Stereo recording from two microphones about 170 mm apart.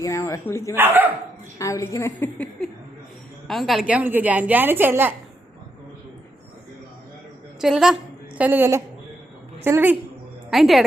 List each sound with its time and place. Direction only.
0.0 s a woman's voice: 15° left (ahead or behind)
0.8 s a woman's voice: 10° right (ahead or behind)
1.5 s a woman's voice: 20° left (ahead or behind); by 5.1 s 10° right (ahead or behind)
7.6 s a woman's voice: centre (ahead or behind)
10.5 s a woman's voice: centre (ahead or behind)